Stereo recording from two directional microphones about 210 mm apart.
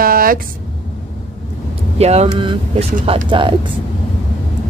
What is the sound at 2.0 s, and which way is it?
A woman's voice, 30° right (ahead or behind).